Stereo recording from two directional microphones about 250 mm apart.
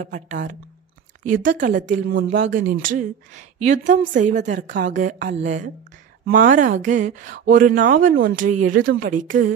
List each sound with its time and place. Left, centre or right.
0.0 s a woman's voice: right